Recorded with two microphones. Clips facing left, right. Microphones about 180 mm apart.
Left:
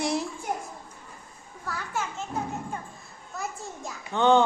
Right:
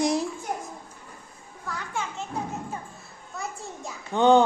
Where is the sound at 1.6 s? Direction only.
5° left (ahead or behind).